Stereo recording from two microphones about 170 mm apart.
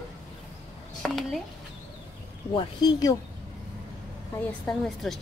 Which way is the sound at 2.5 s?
25° left (ahead or behind).